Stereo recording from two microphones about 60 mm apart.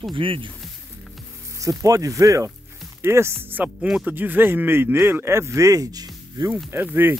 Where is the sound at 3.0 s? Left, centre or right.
Right.